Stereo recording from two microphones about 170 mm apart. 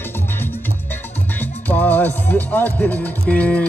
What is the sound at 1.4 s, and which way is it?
Speech, 10° left (ahead or behind).